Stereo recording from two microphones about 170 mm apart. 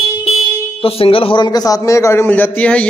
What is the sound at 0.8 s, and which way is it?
A man's voice, 35° left (ahead or behind).